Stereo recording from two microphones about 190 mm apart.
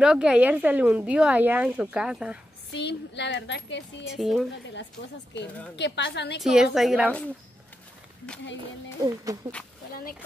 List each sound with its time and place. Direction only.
0.0 s a woman's voice: 5° right (ahead or behind)
2.7 s speech: 65° left (ahead or behind)
4.1 s a woman's voice: centre (ahead or behind)
5.8 s a woman's voice: 65° left (ahead or behind)
6.4 s a woman's voice: centre (ahead or behind)
9.0 s a woman's voice: 20° right (ahead or behind)